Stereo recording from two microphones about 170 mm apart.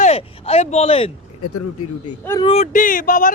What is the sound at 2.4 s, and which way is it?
Speech, 40° left (ahead or behind).